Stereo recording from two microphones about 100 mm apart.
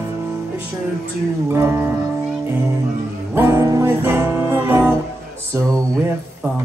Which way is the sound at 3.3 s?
25° right (ahead or behind).